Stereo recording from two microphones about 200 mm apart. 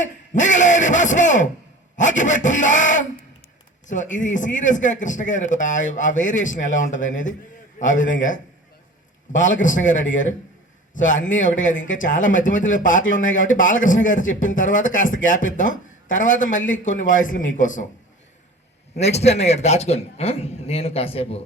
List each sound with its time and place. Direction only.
0.0 s a sound: 40° left (ahead or behind)
2.0 s a man's voice: 40° left (ahead or behind)
9.4 s speech: 40° left (ahead or behind)
18.9 s speech: 35° left (ahead or behind)